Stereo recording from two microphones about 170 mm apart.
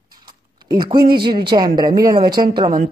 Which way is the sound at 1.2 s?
25° right (ahead or behind).